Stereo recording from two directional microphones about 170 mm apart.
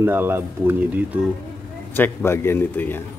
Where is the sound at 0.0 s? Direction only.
15° right (ahead or behind).